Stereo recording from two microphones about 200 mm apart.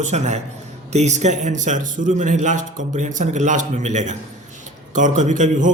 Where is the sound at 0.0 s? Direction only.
35° right (ahead or behind).